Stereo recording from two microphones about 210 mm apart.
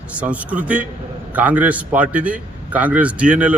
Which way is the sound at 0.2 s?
5° right (ahead or behind).